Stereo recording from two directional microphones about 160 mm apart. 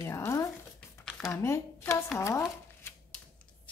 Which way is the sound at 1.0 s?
5° left (ahead or behind).